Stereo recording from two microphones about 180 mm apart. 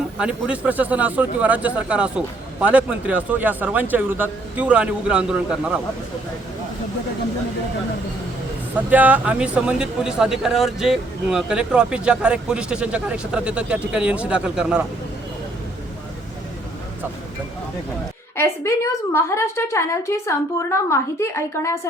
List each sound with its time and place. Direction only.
0.2 s speech: 5° right (ahead or behind)
8.9 s speech: 10° right (ahead or behind)
18.3 s a woman's voice: 15° left (ahead or behind)